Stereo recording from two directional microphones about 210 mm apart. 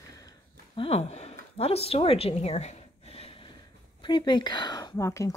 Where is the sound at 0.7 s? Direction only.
25° left (ahead or behind).